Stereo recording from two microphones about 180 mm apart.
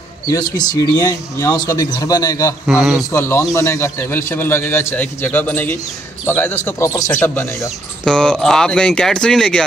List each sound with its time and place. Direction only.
0.3 s speech: 20° left (ahead or behind)
2.6 s speech: centre (ahead or behind)
3.1 s a man's voice: 15° left (ahead or behind)